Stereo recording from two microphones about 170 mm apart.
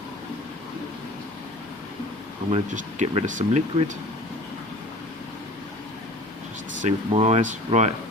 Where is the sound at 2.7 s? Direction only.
40° right (ahead or behind).